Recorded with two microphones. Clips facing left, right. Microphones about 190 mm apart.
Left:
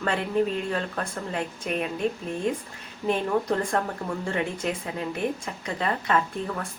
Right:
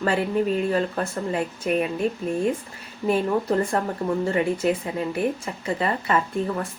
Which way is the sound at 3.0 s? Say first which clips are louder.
Right 3 dB; 5° right (ahead or behind).